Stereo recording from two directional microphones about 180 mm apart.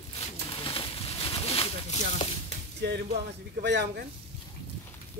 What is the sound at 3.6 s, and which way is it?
Speech, 75° right (ahead or behind).